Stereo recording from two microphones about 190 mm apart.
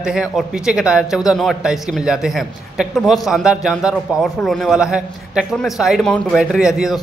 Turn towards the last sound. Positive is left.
turn(degrees=0)  # may be behind; listen again after turning